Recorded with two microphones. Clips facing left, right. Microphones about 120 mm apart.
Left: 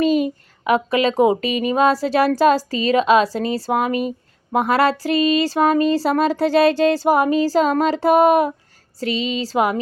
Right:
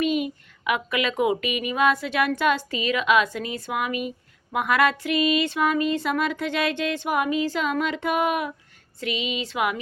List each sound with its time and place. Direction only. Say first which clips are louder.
0.0 s speech: left 6 dB; 35° left (ahead or behind)